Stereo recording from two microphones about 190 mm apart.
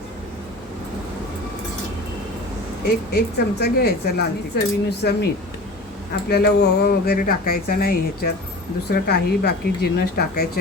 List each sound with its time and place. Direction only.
2.8 s speech: 55° left (ahead or behind)
6.2 s speech: 60° left (ahead or behind)